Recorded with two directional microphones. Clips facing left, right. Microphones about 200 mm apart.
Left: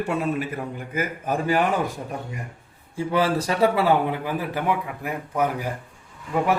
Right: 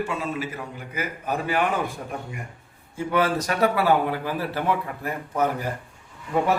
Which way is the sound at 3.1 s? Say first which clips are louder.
Left 1 dB; 30° left (ahead or behind).